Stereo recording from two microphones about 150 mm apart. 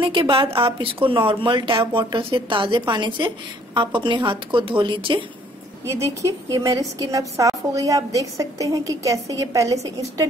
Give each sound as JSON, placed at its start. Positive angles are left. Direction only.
{"t": 0.0, "sound": "a woman's voice", "side_deg": -35}
{"t": 5.9, "sound": "a woman's voice", "side_deg": -20}